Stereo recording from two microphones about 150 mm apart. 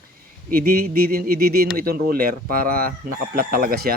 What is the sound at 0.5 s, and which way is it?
Speech, 75° right (ahead or behind).